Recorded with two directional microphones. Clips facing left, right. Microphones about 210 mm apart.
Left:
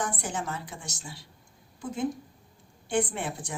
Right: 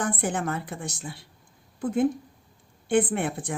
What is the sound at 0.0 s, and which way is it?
A woman's voice, 55° right (ahead or behind).